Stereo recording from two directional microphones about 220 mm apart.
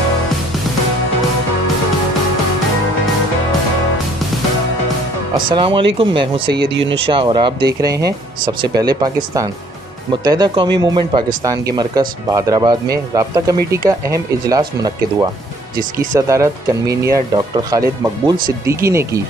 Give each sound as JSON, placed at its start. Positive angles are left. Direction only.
{"t": 5.5, "sound": "speech", "side_deg": -25}
{"t": 6.5, "sound": "speech", "side_deg": -50}
{"t": 7.1, "sound": "speech", "side_deg": -25}